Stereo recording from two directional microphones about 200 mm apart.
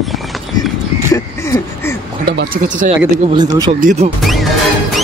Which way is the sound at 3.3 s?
20° right (ahead or behind).